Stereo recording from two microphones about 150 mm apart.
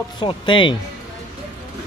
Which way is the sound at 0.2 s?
35° left (ahead or behind).